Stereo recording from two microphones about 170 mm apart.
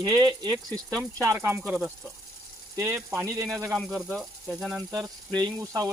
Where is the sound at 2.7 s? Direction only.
15° right (ahead or behind).